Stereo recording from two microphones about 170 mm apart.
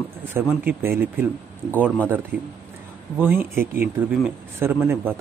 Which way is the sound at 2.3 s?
60° right (ahead or behind).